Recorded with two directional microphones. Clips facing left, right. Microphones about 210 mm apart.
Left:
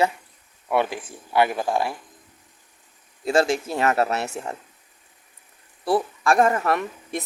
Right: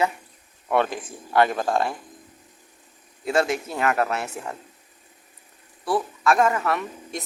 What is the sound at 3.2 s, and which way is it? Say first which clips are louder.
Speech: left 2 dB; 30° left (ahead or behind).